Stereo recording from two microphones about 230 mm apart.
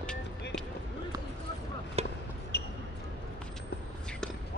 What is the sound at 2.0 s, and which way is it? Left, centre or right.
Basketball bounce, right.